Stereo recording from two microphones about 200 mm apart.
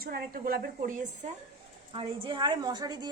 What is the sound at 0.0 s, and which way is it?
A woman's voice, 50° right (ahead or behind).